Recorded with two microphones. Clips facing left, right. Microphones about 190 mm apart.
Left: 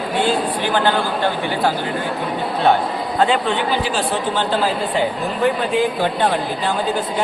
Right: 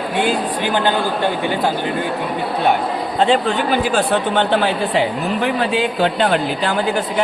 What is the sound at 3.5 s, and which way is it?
Speech, 55° right (ahead or behind).